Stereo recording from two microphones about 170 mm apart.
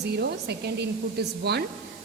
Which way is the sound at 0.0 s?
75° right (ahead or behind).